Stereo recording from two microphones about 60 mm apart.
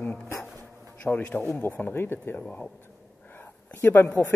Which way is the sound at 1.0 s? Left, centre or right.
Left.